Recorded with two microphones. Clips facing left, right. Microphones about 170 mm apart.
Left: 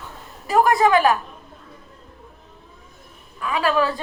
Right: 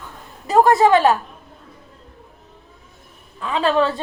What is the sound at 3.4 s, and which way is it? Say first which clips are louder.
Speech: right 2 dB; 25° right (ahead or behind).